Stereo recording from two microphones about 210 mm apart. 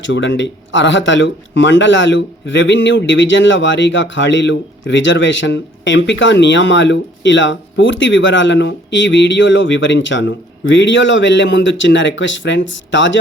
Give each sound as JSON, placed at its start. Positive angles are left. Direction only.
{"t": 0.0, "sound": "speech", "side_deg": 60}